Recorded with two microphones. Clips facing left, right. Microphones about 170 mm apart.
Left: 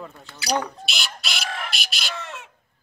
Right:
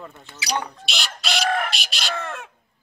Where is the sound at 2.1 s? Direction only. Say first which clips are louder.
Right 5 dB; 55° right (ahead or behind).